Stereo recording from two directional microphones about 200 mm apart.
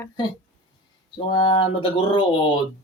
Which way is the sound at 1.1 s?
25° left (ahead or behind).